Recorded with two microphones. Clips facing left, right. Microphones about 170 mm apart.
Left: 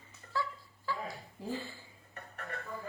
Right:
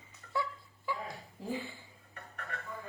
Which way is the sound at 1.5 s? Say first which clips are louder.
Right 1 dB; 15° right (ahead or behind).